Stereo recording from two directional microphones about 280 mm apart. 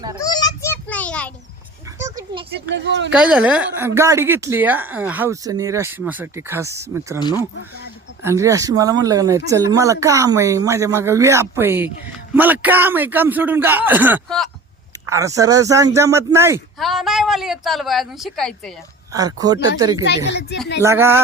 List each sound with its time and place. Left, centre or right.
0.2 s children playing: centre
2.0 s a sound: centre
2.5 s speech: right
3.1 s speech: centre
8.2 s speech: centre
15.1 s speech: centre
19.1 s speech: centre
20.1 s speech: left
20.8 s speech: centre